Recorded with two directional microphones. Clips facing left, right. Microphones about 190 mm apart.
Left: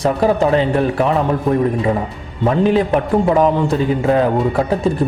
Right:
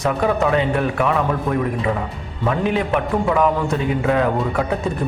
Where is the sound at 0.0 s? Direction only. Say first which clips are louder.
Left 4 dB; 30° left (ahead or behind).